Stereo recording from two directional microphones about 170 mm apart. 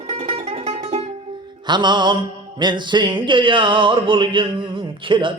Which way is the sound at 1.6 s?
25° right (ahead or behind).